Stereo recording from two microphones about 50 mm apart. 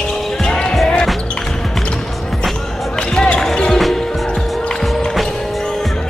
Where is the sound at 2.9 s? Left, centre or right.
Centre.